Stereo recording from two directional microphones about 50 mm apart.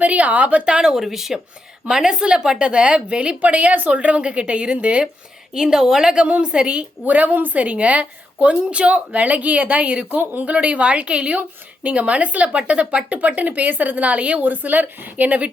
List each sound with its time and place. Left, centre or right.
0.0 s a woman's voice: right
0.8 s a woman's voice: centre; by 5.0 s right
5.5 s a woman's voice: centre
6.1 s a woman's voice: right
7.0 s a woman's voice: right